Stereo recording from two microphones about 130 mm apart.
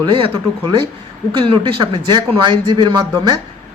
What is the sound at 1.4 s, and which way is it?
A man's voice, 40° right (ahead or behind).